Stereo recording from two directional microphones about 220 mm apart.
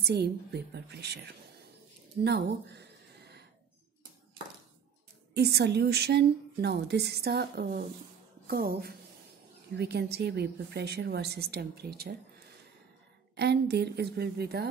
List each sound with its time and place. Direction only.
0.0 s a woman's voice: 45° right (ahead or behind)
5.3 s a woman's voice: 50° right (ahead or behind)
13.4 s a woman's voice: 50° right (ahead or behind)